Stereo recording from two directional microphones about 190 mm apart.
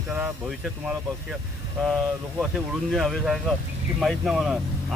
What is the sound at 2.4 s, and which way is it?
Speech, centre (ahead or behind).